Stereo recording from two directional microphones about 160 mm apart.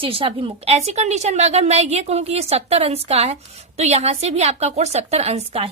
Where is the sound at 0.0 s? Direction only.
35° right (ahead or behind).